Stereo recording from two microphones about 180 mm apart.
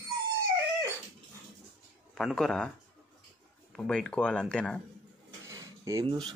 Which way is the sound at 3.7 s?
5° left (ahead or behind).